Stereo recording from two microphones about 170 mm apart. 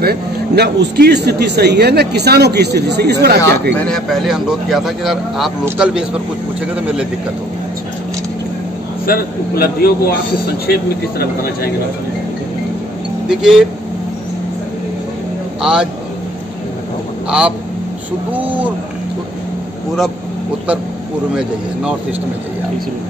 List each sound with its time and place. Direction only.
0.0 s speech: 70° right (ahead or behind)
3.8 s speech: centre (ahead or behind)
9.0 s a man's voice: 60° left (ahead or behind)
13.3 s speech: 5° right (ahead or behind)
15.6 s speech: 5° right (ahead or behind)
17.3 s speech: 5° right (ahead or behind)